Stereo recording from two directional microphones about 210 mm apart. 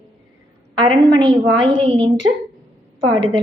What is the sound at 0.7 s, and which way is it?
A woman's voice, 20° right (ahead or behind).